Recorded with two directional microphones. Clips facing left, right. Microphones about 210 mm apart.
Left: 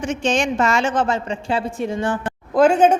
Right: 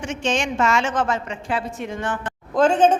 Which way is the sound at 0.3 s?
35° left (ahead or behind).